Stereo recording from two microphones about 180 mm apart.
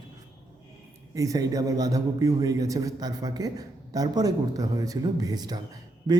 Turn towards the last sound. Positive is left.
turn(degrees=-20)  # may be behind; listen again after turning